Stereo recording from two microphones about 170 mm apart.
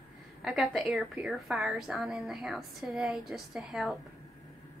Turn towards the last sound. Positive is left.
turn(degrees=0)  # may be behind; listen again after turning